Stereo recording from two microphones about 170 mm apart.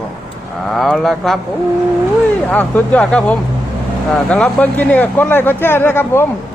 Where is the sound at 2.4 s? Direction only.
10° left (ahead or behind).